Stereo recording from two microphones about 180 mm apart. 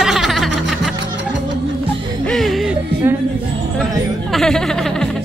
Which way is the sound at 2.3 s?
Centre (ahead or behind).